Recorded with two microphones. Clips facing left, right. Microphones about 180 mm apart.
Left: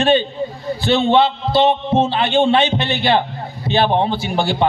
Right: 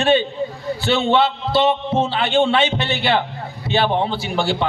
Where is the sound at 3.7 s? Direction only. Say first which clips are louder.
Left 2 dB; 50° left (ahead or behind).